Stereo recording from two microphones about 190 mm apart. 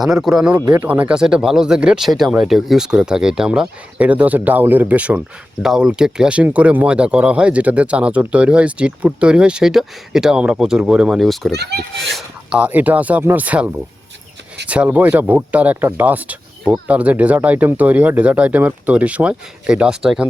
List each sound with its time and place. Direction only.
0.0 s speech: centre (ahead or behind)
11.5 s a child's voice: 60° right (ahead or behind)
12.0 s speech: centre (ahead or behind)
14.7 s speech: 10° right (ahead or behind)